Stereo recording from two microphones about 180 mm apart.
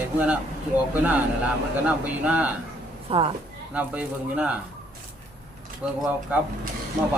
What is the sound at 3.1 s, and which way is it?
Speech, 30° right (ahead or behind).